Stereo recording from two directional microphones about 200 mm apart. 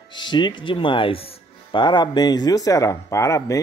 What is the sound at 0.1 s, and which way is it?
Speech, 20° left (ahead or behind).